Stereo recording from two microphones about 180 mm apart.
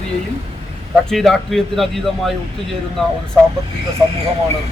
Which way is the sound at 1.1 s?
Centre (ahead or behind).